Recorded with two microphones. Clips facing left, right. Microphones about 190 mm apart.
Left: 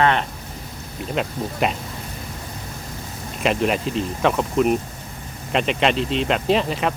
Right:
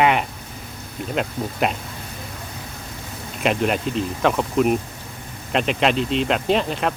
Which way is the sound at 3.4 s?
Centre (ahead or behind).